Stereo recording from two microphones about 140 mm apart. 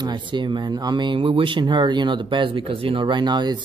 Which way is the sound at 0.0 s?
35° right (ahead or behind).